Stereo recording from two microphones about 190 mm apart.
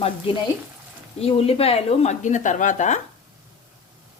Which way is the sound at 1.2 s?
30° left (ahead or behind).